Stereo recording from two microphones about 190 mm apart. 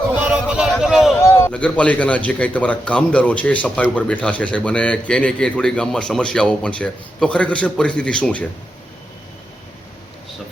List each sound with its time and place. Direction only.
0.3 s music: 5° right (ahead or behind)
1.2 s a man's voice: 15° left (ahead or behind)